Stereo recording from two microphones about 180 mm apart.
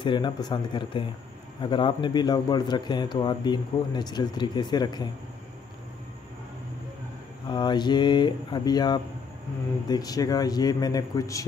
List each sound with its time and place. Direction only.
0.0 s speech: 25° left (ahead or behind)
7.4 s speech: 25° left (ahead or behind)